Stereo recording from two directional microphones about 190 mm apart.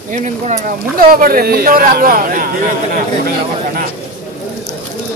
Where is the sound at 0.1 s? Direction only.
40° right (ahead or behind).